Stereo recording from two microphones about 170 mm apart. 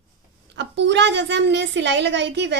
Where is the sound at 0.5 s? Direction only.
90° right.